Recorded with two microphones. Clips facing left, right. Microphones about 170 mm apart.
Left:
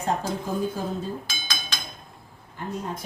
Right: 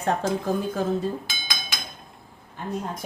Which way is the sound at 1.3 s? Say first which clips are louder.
Even; 15° right (ahead or behind).